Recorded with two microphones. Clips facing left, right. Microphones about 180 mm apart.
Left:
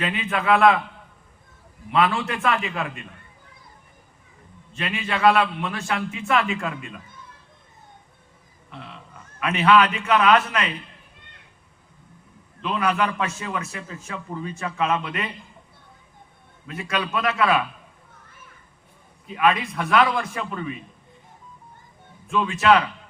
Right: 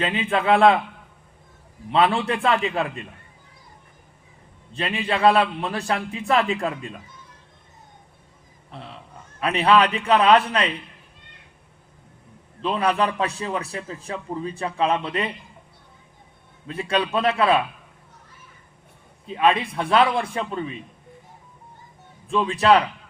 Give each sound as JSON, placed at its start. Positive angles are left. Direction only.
{"t": 0.0, "sound": "a man's voice", "side_deg": -30}
{"t": 1.9, "sound": "a man's voice", "side_deg": -30}
{"t": 4.7, "sound": "a man's voice", "side_deg": -35}
{"t": 8.7, "sound": "a man's voice", "side_deg": -35}
{"t": 12.6, "sound": "a man's voice", "side_deg": -30}
{"t": 16.6, "sound": "a man's voice", "side_deg": -30}
{"t": 19.3, "sound": "a man's voice", "side_deg": -30}
{"t": 22.3, "sound": "a man's voice", "side_deg": -35}